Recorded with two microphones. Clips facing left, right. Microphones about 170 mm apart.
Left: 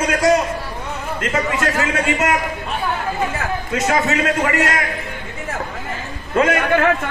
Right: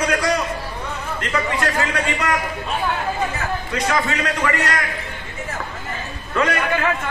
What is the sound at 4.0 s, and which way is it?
Speech, 45° left (ahead or behind).